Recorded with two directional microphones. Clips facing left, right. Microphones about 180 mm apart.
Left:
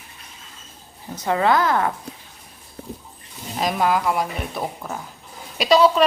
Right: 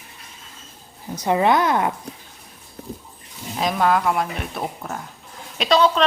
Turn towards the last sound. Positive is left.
turn(degrees=5)  # may be behind; listen again after turning